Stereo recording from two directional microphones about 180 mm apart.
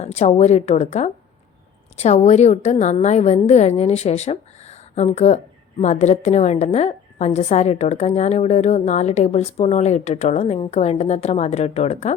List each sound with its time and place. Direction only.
0.0 s a woman's voice: 40° left (ahead or behind)